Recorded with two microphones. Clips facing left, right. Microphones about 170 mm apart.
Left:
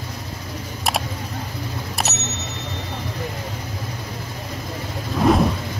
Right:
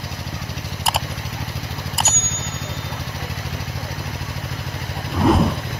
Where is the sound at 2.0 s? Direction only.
Centre (ahead or behind).